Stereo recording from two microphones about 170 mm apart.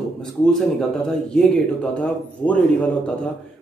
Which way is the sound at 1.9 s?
10° left (ahead or behind).